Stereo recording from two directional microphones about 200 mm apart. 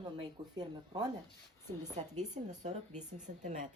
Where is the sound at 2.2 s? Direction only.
35° right (ahead or behind).